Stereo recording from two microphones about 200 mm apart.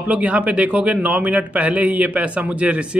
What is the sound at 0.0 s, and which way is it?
Speech, 5° right (ahead or behind).